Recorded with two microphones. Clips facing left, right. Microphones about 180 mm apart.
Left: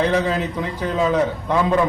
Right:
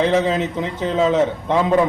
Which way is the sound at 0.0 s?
20° right (ahead or behind).